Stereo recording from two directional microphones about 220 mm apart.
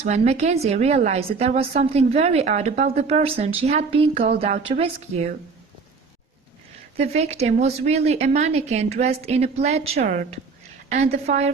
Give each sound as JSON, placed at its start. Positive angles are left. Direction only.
{"t": 0.0, "sound": "a woman's voice", "side_deg": -30}
{"t": 6.9, "sound": "a woman's voice", "side_deg": -30}